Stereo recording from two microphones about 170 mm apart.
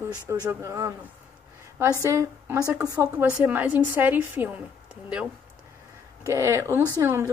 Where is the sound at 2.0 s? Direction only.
15° right (ahead or behind).